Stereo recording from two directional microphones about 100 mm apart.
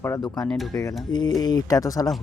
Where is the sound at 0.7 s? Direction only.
40° left (ahead or behind).